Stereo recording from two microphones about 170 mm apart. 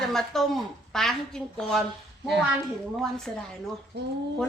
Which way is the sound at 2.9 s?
Centre (ahead or behind).